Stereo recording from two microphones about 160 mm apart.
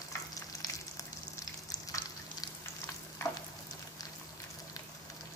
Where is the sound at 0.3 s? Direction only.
20° left (ahead or behind).